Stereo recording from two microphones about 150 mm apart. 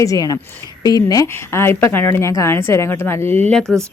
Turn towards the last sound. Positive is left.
turn(degrees=5)  # may be behind; listen again after turning